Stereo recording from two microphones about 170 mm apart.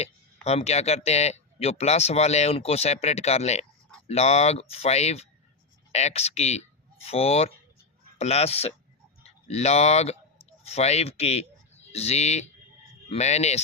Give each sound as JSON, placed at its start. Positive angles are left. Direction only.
{"t": 0.4, "sound": "speech", "side_deg": 40}